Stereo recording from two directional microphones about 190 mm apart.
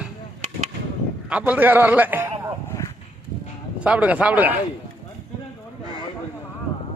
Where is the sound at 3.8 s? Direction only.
5° right (ahead or behind).